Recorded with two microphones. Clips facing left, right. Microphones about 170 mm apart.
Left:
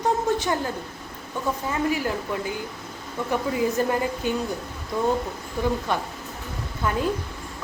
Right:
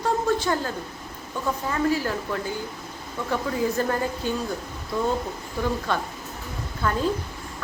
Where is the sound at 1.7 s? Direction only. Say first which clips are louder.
Right 2 dB; 15° left (ahead or behind).